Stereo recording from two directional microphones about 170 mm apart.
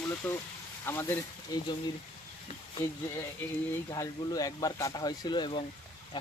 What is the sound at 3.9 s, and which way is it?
Speech, 20° left (ahead or behind).